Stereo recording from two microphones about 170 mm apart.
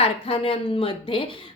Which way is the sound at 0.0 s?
35° left (ahead or behind).